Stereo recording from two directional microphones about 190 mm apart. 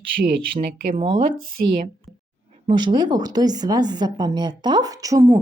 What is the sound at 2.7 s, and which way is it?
A woman's voice, 25° right (ahead or behind).